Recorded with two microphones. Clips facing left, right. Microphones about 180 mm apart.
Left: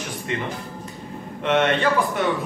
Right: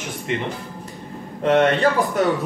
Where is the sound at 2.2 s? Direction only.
40° right (ahead or behind).